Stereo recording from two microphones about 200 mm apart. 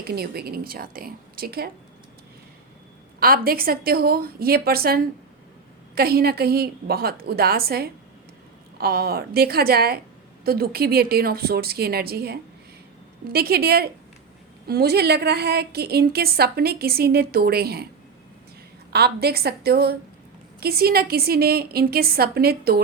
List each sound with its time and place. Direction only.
0.0 s a woman's voice: 50° right (ahead or behind)
3.2 s a woman's voice: 50° right (ahead or behind)
18.9 s a woman's voice: 50° right (ahead or behind)